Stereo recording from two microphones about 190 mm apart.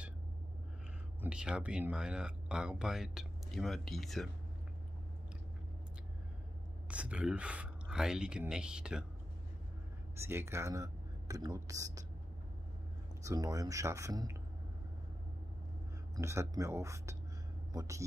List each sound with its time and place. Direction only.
1.2 s speech: 5° right (ahead or behind)
6.9 s speech: 5° right (ahead or behind)
10.1 s speech: 15° right (ahead or behind)
13.2 s speech: 15° right (ahead or behind)
16.2 s speech: 15° right (ahead or behind)